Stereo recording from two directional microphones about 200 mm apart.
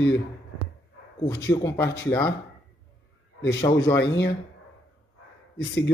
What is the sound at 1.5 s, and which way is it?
Speech, 15° left (ahead or behind).